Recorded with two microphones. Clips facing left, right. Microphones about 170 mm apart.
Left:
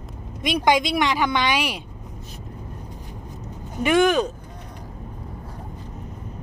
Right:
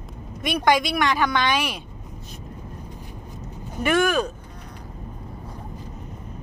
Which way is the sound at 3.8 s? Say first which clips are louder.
Left 3 dB; 20° left (ahead or behind).